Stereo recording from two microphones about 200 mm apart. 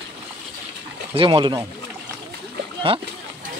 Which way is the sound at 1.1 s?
25° right (ahead or behind).